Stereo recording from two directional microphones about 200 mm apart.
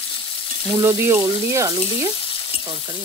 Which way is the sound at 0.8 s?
10° right (ahead or behind).